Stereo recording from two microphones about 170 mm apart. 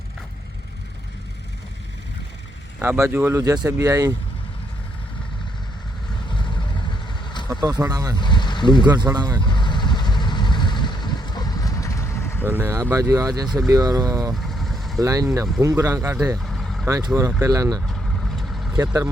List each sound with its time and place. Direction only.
2.7 s speech: 15° right (ahead or behind)
7.6 s speech: 20° right (ahead or behind)
8.2 s a sound: 25° left (ahead or behind)
8.8 s speech: 25° right (ahead or behind)
9.5 s vehicle: 25° left (ahead or behind)
12.5 s speech: 15° right (ahead or behind)
14.4 s vehicle: centre (ahead or behind)
15.0 s speech: 20° right (ahead or behind)
16.4 s vehicle: centre (ahead or behind)
16.8 s speech: 20° right (ahead or behind)
18.3 s vehicle: centre (ahead or behind)